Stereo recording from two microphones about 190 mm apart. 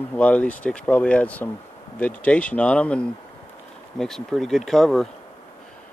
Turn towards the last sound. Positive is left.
turn(degrees=0)  # may be behind; listen again after turning